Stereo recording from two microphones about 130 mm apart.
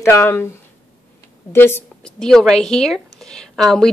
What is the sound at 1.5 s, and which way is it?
Speech, 20° left (ahead or behind).